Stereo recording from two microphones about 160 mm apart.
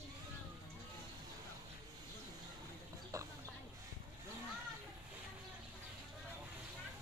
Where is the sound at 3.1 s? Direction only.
20° right (ahead or behind).